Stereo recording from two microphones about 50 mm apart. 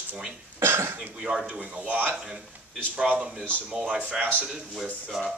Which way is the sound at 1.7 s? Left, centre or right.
Right.